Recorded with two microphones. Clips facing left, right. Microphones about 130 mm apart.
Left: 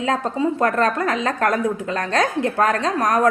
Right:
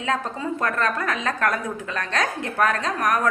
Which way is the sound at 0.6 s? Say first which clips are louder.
Left 4 dB; 30° left (ahead or behind).